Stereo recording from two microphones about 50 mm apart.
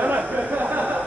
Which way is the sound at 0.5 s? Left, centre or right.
Right.